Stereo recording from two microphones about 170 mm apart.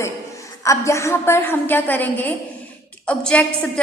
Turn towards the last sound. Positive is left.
turn(degrees=5)  # may be behind; listen again after turning